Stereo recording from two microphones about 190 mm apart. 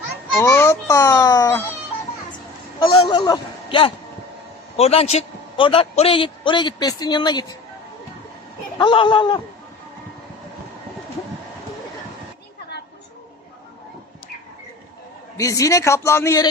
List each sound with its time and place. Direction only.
0.3 s a child's voice: 15° left (ahead or behind)
2.8 s a man's voice: 30° left (ahead or behind)
8.8 s a man's voice: 25° left (ahead or behind)
15.4 s a child's voice: 15° left (ahead or behind)